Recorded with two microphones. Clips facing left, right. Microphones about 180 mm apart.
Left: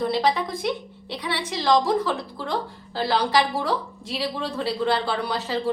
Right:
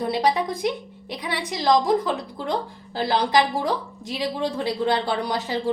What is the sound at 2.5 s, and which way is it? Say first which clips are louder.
A woman's voice: right 2 dB; 20° right (ahead or behind).